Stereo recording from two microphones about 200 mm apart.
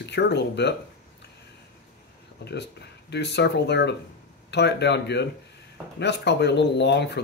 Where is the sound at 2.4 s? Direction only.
60° left (ahead or behind).